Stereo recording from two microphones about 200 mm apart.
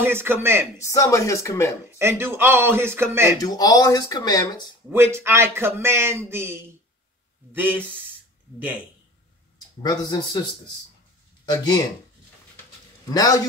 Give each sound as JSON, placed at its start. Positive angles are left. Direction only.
{"t": 0.0, "sound": "a man's voice", "side_deg": -10}
{"t": 0.7, "sound": "speech", "side_deg": 15}
{"t": 2.0, "sound": "a man's voice", "side_deg": -10}
{"t": 3.3, "sound": "speech", "side_deg": 20}
{"t": 4.9, "sound": "a man's voice", "side_deg": -10}
{"t": 9.8, "sound": "speech", "side_deg": 20}
{"t": 11.4, "sound": "speech", "side_deg": 20}
{"t": 13.1, "sound": "speech", "side_deg": 20}